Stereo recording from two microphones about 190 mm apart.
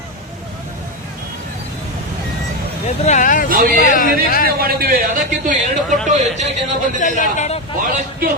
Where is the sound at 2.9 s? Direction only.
40° left (ahead or behind).